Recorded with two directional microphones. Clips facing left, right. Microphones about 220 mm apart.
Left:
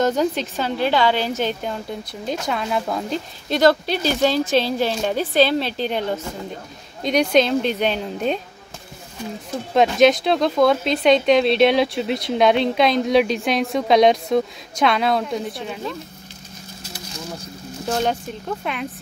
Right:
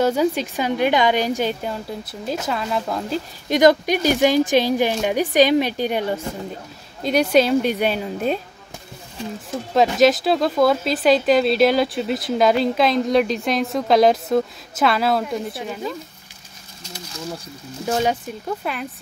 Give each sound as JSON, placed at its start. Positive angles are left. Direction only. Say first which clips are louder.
{"t": 0.0, "sound": "a woman's voice", "louder": "right 1 dB", "side_deg": -10}
{"t": 3.4, "sound": "a woman's voice", "louder": "right 2 dB", "side_deg": -15}
{"t": 9.8, "sound": "speech", "louder": "left 1 dB", "side_deg": 0}
{"t": 18.6, "sound": "speech", "louder": "even", "side_deg": 0}